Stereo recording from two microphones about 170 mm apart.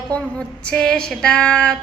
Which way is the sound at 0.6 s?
5° left (ahead or behind).